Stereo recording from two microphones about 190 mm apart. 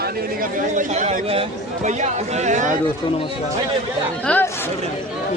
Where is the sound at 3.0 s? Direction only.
25° left (ahead or behind).